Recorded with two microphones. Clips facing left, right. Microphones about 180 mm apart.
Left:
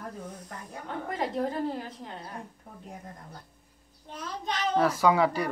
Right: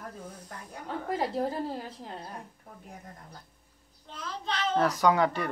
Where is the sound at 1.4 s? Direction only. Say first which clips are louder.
Left 2 dB; 30° right (ahead or behind).